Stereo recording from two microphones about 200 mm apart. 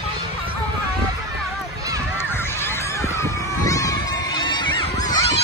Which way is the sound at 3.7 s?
15° left (ahead or behind).